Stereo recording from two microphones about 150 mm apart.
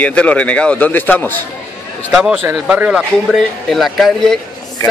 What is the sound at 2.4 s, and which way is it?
A man's voice, 5° right (ahead or behind).